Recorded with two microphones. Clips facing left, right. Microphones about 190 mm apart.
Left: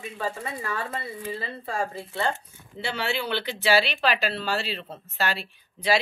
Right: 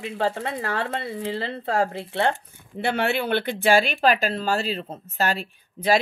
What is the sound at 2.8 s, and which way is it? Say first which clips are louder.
Speech: right 6 dB; 55° right (ahead or behind).